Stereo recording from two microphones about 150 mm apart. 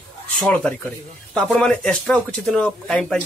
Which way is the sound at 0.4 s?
5° left (ahead or behind).